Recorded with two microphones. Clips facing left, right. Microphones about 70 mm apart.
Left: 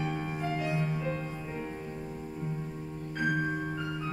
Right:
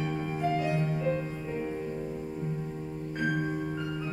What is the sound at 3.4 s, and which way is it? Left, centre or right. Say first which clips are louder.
Music: right 1 dB; centre.